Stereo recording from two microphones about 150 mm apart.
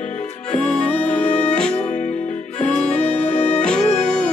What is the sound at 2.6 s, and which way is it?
Music, 45° left (ahead or behind).